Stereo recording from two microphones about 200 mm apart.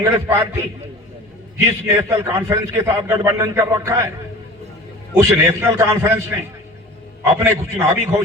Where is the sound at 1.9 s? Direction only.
15° right (ahead or behind).